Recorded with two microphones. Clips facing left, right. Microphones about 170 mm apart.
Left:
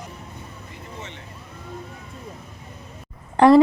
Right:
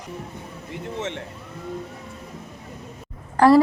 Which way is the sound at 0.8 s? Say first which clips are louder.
Right 10 dB; 80° right.